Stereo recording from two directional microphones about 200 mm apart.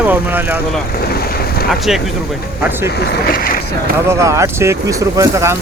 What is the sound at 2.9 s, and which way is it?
Speech, 55° left (ahead or behind).